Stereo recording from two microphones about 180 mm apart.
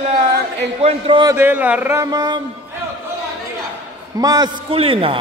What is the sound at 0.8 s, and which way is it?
Speech, 30° right (ahead or behind).